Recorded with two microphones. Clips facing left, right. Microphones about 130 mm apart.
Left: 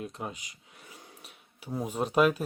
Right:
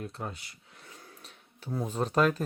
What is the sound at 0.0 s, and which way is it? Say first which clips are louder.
Speech: left 1 dB; 15° left (ahead or behind).